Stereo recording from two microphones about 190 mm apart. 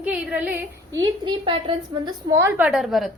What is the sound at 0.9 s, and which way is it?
A woman's voice, 25° right (ahead or behind).